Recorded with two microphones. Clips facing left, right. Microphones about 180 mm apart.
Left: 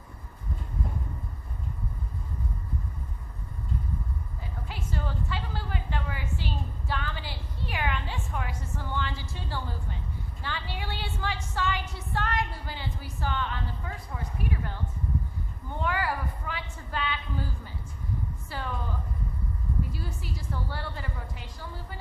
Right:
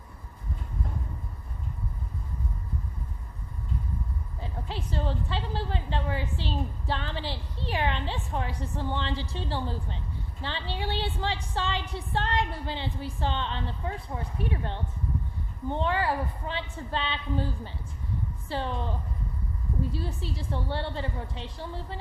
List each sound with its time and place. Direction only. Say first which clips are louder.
4.4 s a woman's voice: right 6 dB; 30° right (ahead or behind)